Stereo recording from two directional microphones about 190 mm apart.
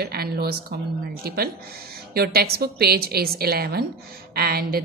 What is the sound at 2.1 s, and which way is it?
A woman's voice, 55° right (ahead or behind).